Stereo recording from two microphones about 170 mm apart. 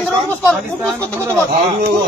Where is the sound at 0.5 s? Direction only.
Centre (ahead or behind).